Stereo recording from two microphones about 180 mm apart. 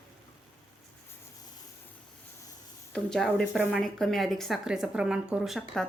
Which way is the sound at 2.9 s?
5° left (ahead or behind).